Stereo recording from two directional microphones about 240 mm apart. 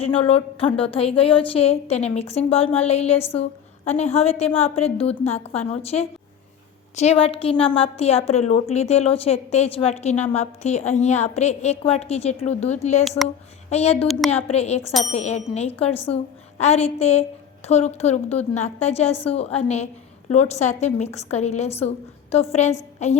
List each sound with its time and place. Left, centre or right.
0.0 s a woman's voice: left